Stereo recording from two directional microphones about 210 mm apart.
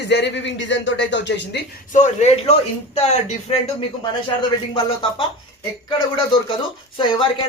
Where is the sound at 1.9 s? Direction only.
35° left (ahead or behind).